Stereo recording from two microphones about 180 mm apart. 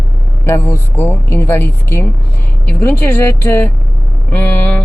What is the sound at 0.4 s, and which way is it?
Speech, 15° left (ahead or behind).